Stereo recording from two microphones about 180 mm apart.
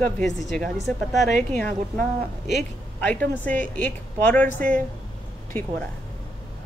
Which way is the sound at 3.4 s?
10° left (ahead or behind).